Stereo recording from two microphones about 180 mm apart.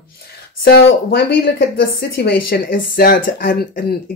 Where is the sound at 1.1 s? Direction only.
60° left (ahead or behind).